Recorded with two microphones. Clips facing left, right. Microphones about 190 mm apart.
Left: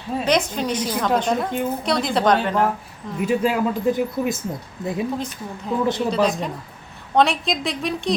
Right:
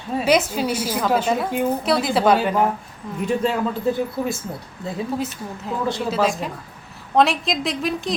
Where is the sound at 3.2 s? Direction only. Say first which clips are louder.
Left 1 dB; 5° left (ahead or behind).